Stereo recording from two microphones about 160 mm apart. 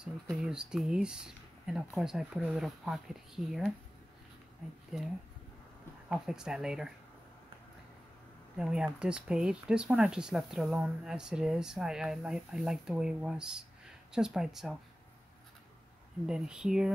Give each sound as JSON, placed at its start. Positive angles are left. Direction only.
{"t": 0.0, "sound": "speech", "side_deg": -5}
{"t": 4.9, "sound": "speech", "side_deg": -5}
{"t": 8.5, "sound": "speech", "side_deg": -5}
{"t": 16.3, "sound": "speech", "side_deg": -5}